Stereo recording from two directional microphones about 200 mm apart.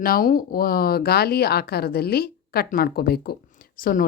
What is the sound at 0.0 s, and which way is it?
Speech, 45° left (ahead or behind).